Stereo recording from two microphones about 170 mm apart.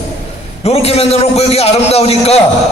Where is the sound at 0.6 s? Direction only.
35° left (ahead or behind).